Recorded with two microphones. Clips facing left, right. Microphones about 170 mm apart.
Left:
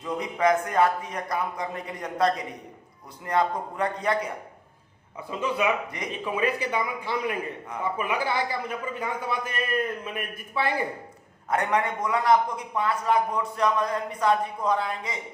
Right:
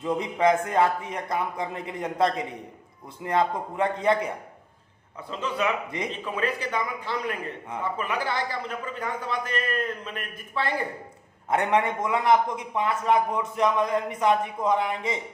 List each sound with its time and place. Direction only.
0.0 s a man's voice: 25° right (ahead or behind)
5.3 s a man's voice: 10° left (ahead or behind)
11.4 s a man's voice: 25° right (ahead or behind)